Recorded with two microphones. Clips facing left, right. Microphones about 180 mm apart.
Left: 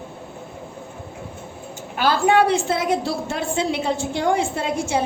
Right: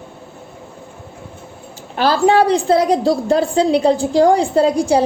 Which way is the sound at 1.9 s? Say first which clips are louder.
Right 4 dB; 35° right (ahead or behind).